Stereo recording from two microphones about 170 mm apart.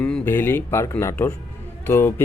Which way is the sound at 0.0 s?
10° left (ahead or behind).